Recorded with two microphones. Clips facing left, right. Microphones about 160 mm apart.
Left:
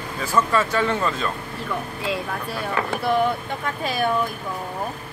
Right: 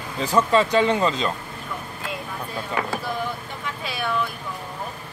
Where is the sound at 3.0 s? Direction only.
65° left (ahead or behind).